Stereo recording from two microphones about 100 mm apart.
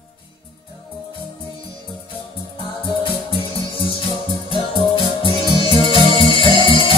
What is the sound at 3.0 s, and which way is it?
Music, 60° left (ahead or behind).